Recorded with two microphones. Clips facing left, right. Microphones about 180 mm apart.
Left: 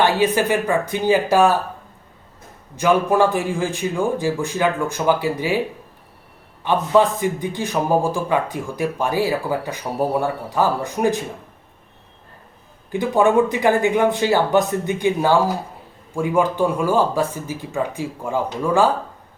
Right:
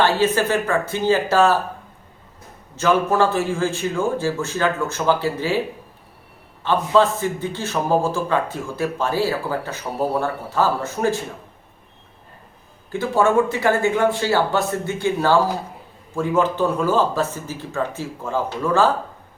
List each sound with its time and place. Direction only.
0.0 s a man's voice: 15° left (ahead or behind)
2.7 s a man's voice: 15° left (ahead or behind)
6.6 s a man's voice: 15° left (ahead or behind)
12.9 s a man's voice: 15° left (ahead or behind)